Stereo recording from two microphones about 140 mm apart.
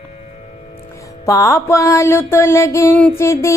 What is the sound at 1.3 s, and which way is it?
Music, 20° left (ahead or behind).